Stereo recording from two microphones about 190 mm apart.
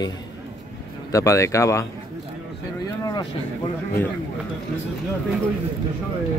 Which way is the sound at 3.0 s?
20° left (ahead or behind).